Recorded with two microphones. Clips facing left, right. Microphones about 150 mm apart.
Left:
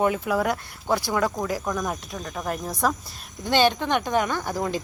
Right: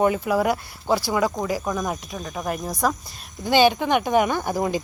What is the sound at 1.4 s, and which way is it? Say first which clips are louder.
Owl: right 2 dB; 5° right (ahead or behind).